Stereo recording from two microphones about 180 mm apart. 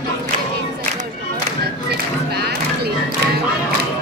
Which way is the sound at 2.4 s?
65° right (ahead or behind).